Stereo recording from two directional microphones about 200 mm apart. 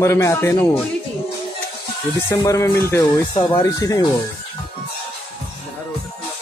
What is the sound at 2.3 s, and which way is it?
Speech, 15° left (ahead or behind).